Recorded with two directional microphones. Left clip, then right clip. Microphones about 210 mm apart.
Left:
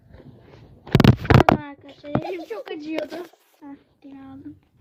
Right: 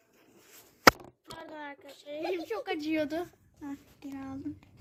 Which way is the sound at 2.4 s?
60° right (ahead or behind).